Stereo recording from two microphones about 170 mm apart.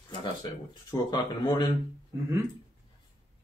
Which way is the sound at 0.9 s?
25° left (ahead or behind).